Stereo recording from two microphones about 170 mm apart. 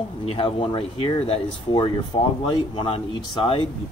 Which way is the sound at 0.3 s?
35° left (ahead or behind).